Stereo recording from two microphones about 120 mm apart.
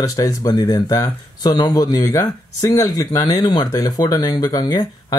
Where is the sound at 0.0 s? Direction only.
30° left (ahead or behind).